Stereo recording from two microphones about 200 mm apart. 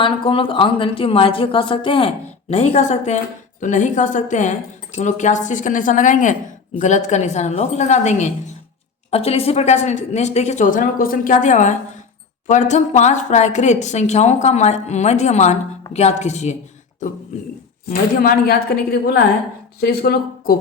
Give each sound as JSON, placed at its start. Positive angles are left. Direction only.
{"t": 0.0, "sound": "a woman's voice", "side_deg": 25}
{"t": 17.8, "sound": "a woman's voice", "side_deg": 45}